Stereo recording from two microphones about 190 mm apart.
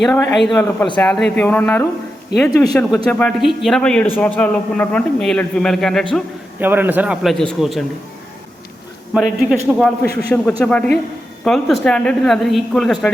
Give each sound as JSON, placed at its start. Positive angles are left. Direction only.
{"t": 0.0, "sound": "a man's voice", "side_deg": 10}
{"t": 2.3, "sound": "a man's voice", "side_deg": 60}
{"t": 2.7, "sound": "a man's voice", "side_deg": 5}
{"t": 6.6, "sound": "a man's voice", "side_deg": -10}
{"t": 9.1, "sound": "a man's voice", "side_deg": 0}